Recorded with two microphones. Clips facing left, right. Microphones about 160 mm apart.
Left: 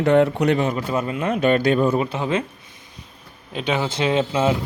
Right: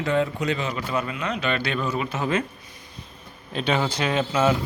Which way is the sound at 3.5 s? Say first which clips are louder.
Left 1 dB; 15° left (ahead or behind).